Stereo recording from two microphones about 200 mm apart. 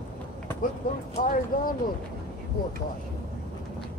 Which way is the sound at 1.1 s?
45° left (ahead or behind).